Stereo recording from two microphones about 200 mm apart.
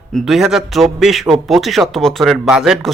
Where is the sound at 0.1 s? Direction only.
Centre (ahead or behind).